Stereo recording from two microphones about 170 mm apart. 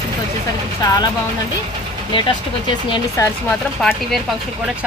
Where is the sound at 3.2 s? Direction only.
20° left (ahead or behind).